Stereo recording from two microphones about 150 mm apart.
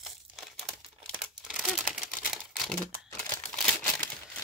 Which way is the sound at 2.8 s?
10° left (ahead or behind).